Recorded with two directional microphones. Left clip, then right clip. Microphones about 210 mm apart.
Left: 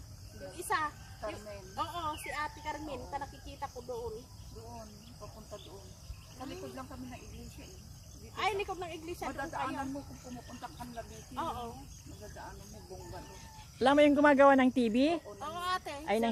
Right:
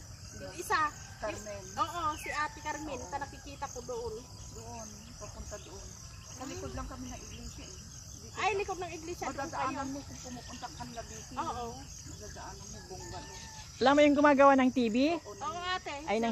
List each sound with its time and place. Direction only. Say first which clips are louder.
0.7 s speech: right 3 dB; 5° left (ahead or behind)
6.4 s speech: right 2 dB; 15° left (ahead or behind)
8.4 s speech: right 2 dB; 45° left (ahead or behind)
10.6 s speech: right 1 dB; 50° left (ahead or behind)
13.7 s speech: right 1 dB; 5° left (ahead or behind)
15.4 s speech: even; 50° left (ahead or behind)
16.0 s speech: left 1 dB; 10° left (ahead or behind)